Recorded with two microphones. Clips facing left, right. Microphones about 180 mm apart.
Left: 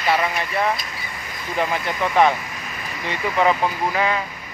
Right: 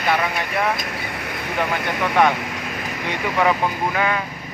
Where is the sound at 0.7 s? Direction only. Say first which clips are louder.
Right 5 dB; 65° right (ahead or behind).